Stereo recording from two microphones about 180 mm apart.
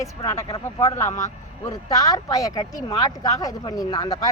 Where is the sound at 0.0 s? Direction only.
15° left (ahead or behind).